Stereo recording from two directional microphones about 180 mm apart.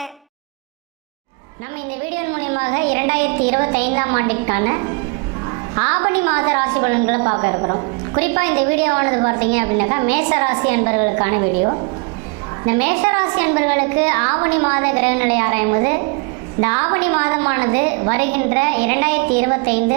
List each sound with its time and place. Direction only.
2.1 s a woman's voice: 15° right (ahead or behind)
8.2 s a woman's voice: 15° right (ahead or behind)
12.6 s a woman's voice: 15° right (ahead or behind)